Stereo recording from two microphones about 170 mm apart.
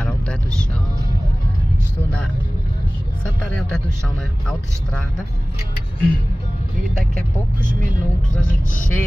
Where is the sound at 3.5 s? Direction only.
5° left (ahead or behind).